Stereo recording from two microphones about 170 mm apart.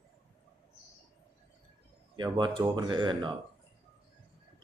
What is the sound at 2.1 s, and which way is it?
A man's voice, 25° right (ahead or behind).